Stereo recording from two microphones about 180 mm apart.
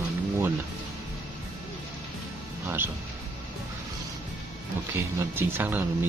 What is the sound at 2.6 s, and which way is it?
Speech, 10° right (ahead or behind).